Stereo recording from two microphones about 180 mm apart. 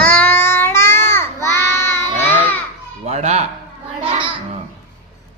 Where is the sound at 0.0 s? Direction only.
10° left (ahead or behind).